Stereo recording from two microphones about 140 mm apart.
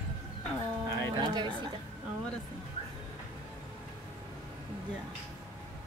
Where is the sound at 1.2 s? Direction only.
35° right (ahead or behind).